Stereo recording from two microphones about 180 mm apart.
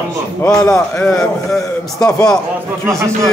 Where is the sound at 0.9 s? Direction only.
5° left (ahead or behind).